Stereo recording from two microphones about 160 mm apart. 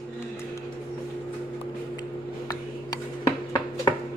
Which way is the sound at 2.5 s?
25° left (ahead or behind).